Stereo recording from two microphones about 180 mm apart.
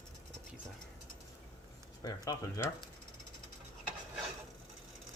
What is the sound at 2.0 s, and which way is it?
Speech, 20° left (ahead or behind).